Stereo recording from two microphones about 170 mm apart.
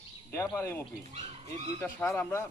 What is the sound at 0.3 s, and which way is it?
A man's voice, 15° left (ahead or behind).